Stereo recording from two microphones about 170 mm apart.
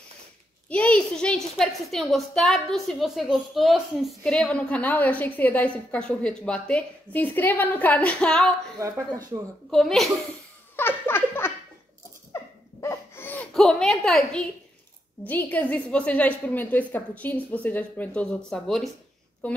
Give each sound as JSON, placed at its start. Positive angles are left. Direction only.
{"t": 0.7, "sound": "a woman's voice", "side_deg": 5}
{"t": 8.7, "sound": "speech", "side_deg": -20}
{"t": 9.7, "sound": "a child's voice", "side_deg": 0}
{"t": 10.8, "sound": "a sound", "side_deg": 10}
{"t": 12.8, "sound": "a sound", "side_deg": 15}
{"t": 15.2, "sound": "a woman's voice", "side_deg": 10}